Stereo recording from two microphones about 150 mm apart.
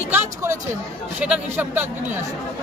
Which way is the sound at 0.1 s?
15° right (ahead or behind).